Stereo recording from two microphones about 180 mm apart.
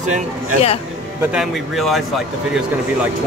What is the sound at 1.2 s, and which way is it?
Speech, 5° right (ahead or behind).